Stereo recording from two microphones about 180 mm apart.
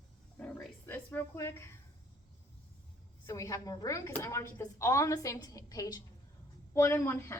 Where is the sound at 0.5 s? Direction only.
10° left (ahead or behind).